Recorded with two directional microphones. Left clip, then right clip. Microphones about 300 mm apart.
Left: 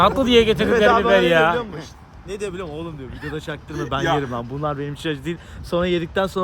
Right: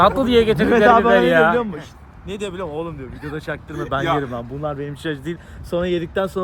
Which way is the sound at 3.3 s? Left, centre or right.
Centre.